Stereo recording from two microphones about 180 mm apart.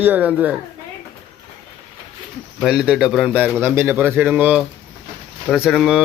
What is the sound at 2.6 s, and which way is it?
A man's voice, 5° right (ahead or behind).